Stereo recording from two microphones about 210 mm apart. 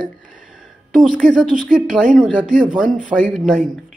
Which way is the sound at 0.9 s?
Centre (ahead or behind).